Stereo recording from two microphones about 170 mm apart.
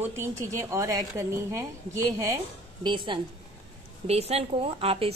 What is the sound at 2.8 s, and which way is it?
A woman's voice, 30° right (ahead or behind).